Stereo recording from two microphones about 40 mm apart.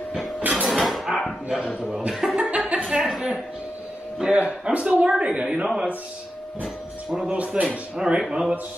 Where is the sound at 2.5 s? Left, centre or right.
Right.